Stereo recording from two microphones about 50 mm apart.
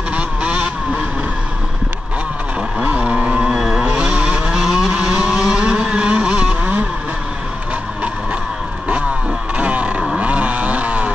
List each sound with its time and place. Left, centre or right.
0.1 s vehicle: right
2.8 s vehicle: right
3.4 s a sound: centre
3.8 s vehicle: centre
4.6 s vehicle: centre; by 6.8 s right
9.6 s a sound: right
10.1 s vehicle: right